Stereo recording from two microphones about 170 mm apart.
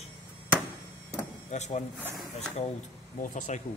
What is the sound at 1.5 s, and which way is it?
Speech, 40° left (ahead or behind).